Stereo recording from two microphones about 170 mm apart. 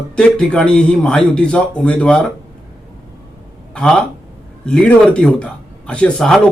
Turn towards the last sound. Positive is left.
turn(degrees=5)  # may be behind; listen again after turning